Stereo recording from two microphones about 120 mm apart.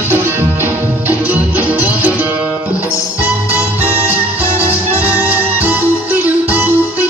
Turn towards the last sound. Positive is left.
turn(degrees=-15)  # may be behind; listen again after turning